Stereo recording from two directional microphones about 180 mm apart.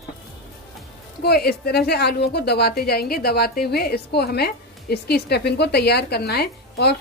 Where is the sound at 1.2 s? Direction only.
60° left (ahead or behind).